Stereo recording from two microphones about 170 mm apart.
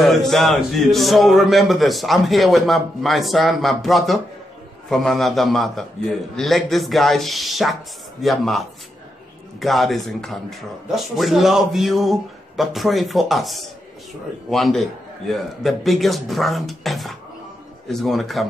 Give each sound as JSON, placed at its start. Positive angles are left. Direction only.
{"t": 0.0, "sound": "a man's voice", "side_deg": 0}